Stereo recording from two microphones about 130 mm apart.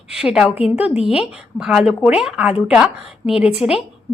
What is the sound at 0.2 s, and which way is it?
A woman's voice, 5° right (ahead or behind).